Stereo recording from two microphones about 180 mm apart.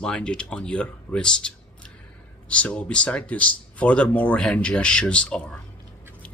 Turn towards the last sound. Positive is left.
turn(degrees=5)  # may be behind; listen again after turning